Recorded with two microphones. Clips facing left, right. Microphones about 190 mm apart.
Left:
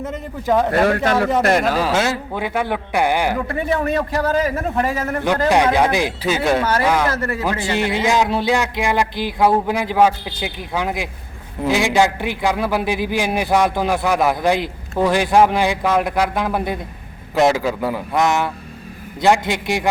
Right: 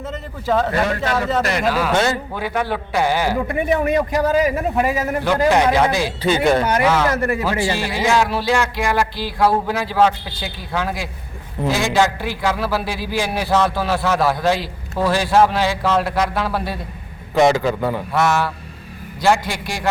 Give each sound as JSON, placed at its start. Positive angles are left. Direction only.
{"t": 0.0, "sound": "a man's voice", "side_deg": 15}
{"t": 0.7, "sound": "speech", "side_deg": 60}
{"t": 1.4, "sound": "a man's voice", "side_deg": 50}
{"t": 1.9, "sound": "a man's voice", "side_deg": 0}
{"t": 2.3, "sound": "a man's voice", "side_deg": 15}
{"t": 3.4, "sound": "a man's voice", "side_deg": -15}
{"t": 5.5, "sound": "a man's voice", "side_deg": 15}
{"t": 6.2, "sound": "a man's voice", "side_deg": 5}
{"t": 6.8, "sound": "a man's voice", "side_deg": 15}
{"t": 7.1, "sound": "a man's voice", "side_deg": -15}
{"t": 7.8, "sound": "a man's voice", "side_deg": 20}
{"t": 17.3, "sound": "a man's voice", "side_deg": 5}
{"t": 18.1, "sound": "a man's voice", "side_deg": 20}